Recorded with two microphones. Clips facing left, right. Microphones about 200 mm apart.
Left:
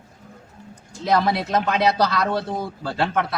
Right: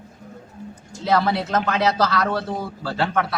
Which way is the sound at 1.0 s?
15° left (ahead or behind).